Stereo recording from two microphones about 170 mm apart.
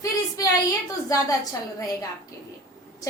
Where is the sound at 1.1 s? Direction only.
20° left (ahead or behind).